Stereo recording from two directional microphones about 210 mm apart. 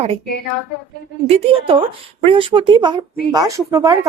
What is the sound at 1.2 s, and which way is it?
Speech, 25° right (ahead or behind).